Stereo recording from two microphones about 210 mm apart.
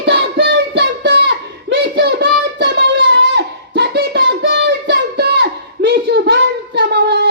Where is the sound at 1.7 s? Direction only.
50° right (ahead or behind).